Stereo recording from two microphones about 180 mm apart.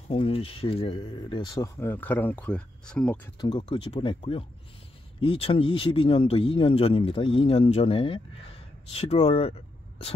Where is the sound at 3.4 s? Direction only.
25° left (ahead or behind).